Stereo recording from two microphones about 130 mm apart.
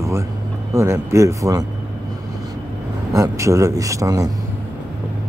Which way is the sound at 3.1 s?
25° right (ahead or behind).